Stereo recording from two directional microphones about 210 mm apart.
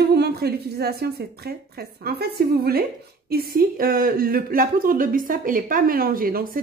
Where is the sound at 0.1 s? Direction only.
50° right (ahead or behind).